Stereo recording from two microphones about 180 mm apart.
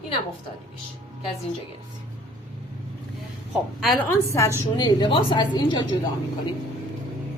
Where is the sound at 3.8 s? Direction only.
Centre (ahead or behind).